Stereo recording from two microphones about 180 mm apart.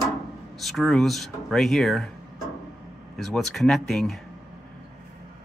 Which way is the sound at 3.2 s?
Centre (ahead or behind).